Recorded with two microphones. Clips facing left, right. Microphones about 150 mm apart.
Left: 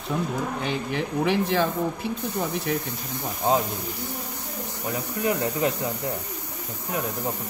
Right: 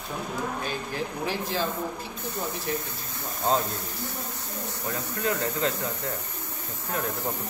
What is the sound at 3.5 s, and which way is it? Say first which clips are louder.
Speech: left 3 dB; 10° left (ahead or behind).